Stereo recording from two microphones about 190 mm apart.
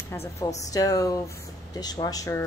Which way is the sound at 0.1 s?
15° left (ahead or behind).